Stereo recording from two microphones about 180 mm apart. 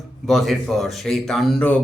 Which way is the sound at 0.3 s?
Centre (ahead or behind).